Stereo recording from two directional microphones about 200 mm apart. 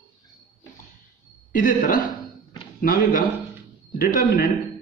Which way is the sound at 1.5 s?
40° left (ahead or behind).